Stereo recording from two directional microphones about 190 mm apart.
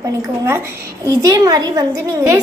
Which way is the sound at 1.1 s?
15° right (ahead or behind).